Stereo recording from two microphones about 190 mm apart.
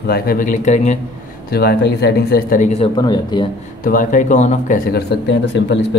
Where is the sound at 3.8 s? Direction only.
45° left (ahead or behind).